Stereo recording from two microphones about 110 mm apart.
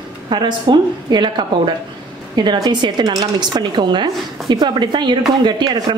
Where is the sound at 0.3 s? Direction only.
45° right (ahead or behind).